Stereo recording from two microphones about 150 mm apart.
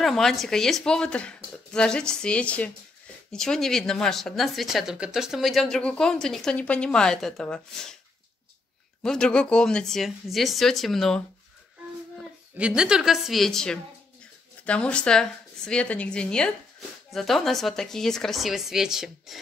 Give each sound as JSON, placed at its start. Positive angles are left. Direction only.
{"t": 0.0, "sound": "speech", "side_deg": 0}
{"t": 9.0, "sound": "a woman's voice", "side_deg": 5}